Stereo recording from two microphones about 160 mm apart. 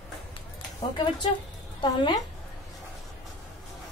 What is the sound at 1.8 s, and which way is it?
Speech, 30° left (ahead or behind).